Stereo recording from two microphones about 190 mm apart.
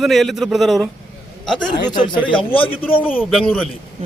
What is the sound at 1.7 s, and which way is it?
Speech, 25° left (ahead or behind).